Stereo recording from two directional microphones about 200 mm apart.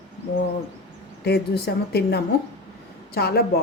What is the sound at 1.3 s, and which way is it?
A woman's voice, 55° left (ahead or behind).